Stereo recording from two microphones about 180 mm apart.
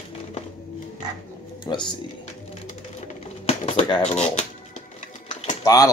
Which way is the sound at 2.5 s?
40° left (ahead or behind).